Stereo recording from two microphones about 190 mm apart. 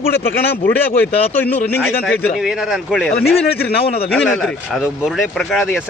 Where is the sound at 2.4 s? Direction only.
Centre (ahead or behind).